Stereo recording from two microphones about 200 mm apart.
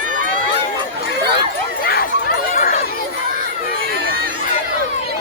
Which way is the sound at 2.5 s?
40° left (ahead or behind).